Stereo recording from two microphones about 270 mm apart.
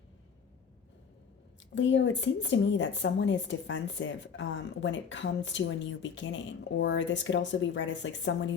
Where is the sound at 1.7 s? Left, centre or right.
Left.